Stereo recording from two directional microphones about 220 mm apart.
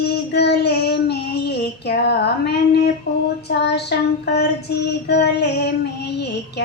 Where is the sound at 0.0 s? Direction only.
45° left (ahead or behind).